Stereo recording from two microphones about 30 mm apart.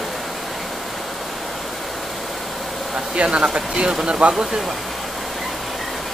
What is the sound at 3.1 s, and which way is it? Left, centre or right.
Speech, right.